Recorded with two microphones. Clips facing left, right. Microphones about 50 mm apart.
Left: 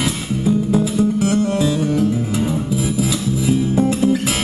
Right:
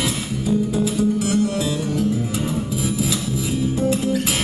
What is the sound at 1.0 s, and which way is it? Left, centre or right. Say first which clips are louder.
Music: left 2 dB; left.